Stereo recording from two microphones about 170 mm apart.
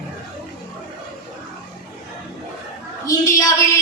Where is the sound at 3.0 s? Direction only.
20° left (ahead or behind).